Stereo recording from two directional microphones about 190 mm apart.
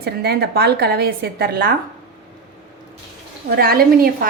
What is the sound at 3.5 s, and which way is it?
Speech, 55° right (ahead or behind).